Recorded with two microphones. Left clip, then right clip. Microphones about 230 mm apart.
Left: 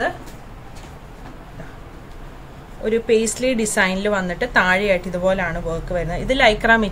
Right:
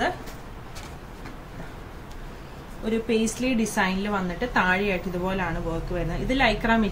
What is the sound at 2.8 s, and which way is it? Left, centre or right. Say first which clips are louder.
A woman's voice: left 8 dB; left.